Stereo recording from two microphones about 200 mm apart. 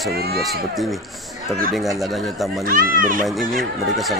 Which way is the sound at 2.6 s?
45° right (ahead or behind).